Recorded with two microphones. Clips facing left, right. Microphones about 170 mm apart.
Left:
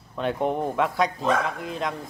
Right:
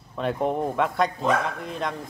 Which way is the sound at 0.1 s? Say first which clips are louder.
Even; centre (ahead or behind).